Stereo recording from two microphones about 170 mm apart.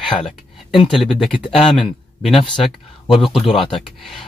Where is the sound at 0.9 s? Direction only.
Centre (ahead or behind).